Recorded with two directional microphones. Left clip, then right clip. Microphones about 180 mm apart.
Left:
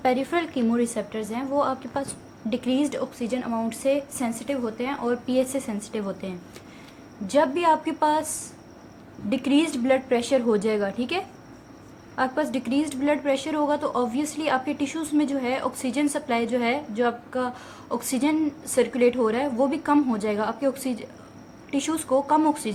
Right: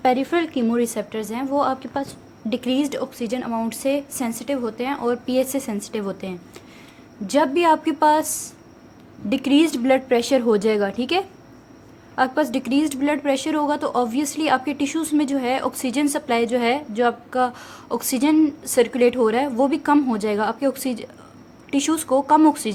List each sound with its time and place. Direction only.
0.0 s a woman's voice: 35° right (ahead or behind)
1.9 s a woman's voice: 25° right (ahead or behind)
2.5 s a woman's voice: 50° right (ahead or behind)